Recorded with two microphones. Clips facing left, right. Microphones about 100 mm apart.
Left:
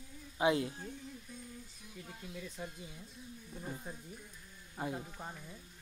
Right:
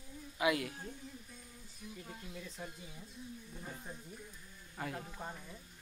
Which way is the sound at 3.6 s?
10° left (ahead or behind).